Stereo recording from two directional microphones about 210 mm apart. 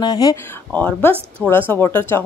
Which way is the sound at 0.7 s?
5° left (ahead or behind).